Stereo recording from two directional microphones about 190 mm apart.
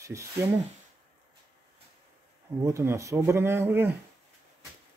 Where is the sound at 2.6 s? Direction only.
15° right (ahead or behind).